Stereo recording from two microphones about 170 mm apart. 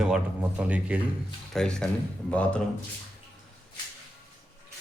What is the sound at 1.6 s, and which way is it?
Speech, 5° left (ahead or behind).